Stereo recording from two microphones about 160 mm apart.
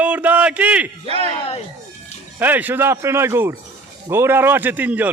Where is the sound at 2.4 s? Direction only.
10° right (ahead or behind).